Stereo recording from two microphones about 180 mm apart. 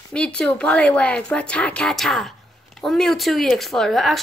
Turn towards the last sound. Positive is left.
turn(degrees=0)  # may be behind; listen again after turning